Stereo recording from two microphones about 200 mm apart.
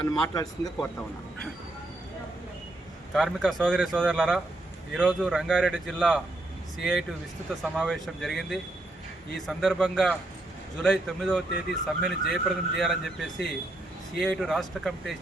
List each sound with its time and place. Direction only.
0.0 s speech: 20° left (ahead or behind)
0.8 s speech: 5° left (ahead or behind)
3.2 s speech: centre (ahead or behind)